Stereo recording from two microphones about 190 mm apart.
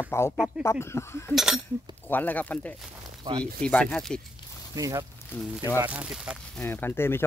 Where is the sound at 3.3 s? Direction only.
20° right (ahead or behind).